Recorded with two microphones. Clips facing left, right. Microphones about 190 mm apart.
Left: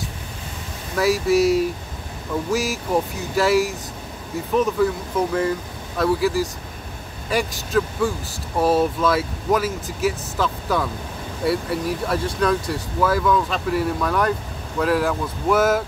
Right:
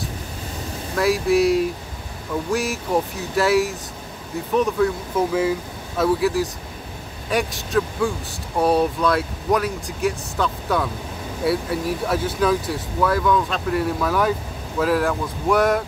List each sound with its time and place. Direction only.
0.9 s speech: centre (ahead or behind)